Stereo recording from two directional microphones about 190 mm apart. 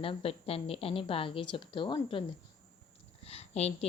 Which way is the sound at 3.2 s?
35° left (ahead or behind).